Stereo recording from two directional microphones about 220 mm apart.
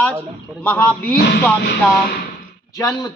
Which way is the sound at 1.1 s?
50° left (ahead or behind).